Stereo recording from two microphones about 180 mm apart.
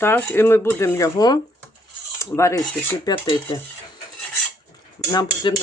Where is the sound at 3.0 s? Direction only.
25° left (ahead or behind).